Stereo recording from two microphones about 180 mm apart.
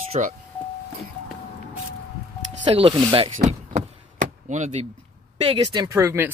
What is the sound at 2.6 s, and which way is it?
Speech, 30° right (ahead or behind).